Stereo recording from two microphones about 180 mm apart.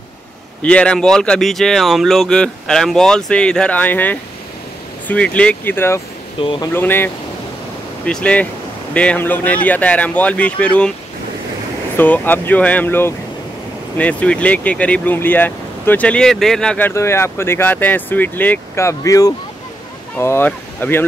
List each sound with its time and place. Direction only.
0.6 s speech: 5° left (ahead or behind)
6.4 s speech: 25° left (ahead or behind)
6.7 s speech: 10° left (ahead or behind)
12.0 s speech: 10° left (ahead or behind)